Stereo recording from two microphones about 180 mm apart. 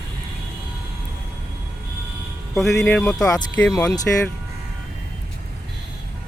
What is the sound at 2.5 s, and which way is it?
Speech, 5° left (ahead or behind).